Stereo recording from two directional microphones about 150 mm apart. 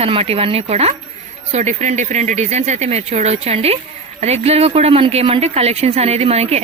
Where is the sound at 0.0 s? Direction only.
40° right (ahead or behind).